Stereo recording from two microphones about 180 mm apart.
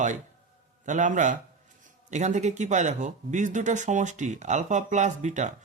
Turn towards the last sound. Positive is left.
turn(degrees=-40)  # may be behind; listen again after turning